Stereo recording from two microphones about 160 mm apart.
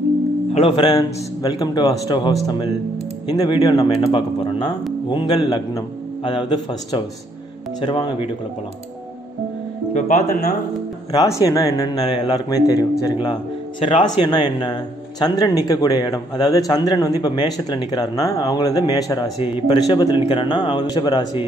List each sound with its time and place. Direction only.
0.5 s speech: 35° left (ahead or behind)
0.9 s a man's voice: 25° left (ahead or behind)
9.9 s speech: 65° left (ahead or behind)
11.1 s a man's voice: 20° left (ahead or behind)